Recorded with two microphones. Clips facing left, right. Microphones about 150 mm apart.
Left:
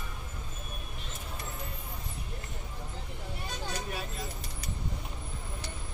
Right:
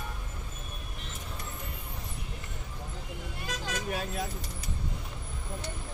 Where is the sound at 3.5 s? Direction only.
90° right.